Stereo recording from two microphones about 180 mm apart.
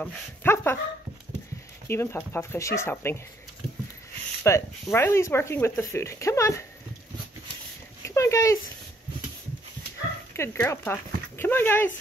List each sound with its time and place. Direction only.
0.0 s speech: 10° left (ahead or behind)
1.9 s speech: 15° left (ahead or behind)
4.4 s speech: 15° left (ahead or behind)
8.0 s a sound: 15° left (ahead or behind)
10.3 s speech: 15° left (ahead or behind)